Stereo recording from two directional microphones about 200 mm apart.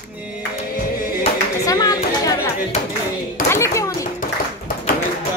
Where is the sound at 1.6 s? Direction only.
20° left (ahead or behind).